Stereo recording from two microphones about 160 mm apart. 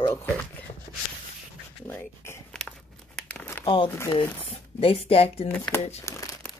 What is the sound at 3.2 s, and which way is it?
Crumpling, 10° left (ahead or behind).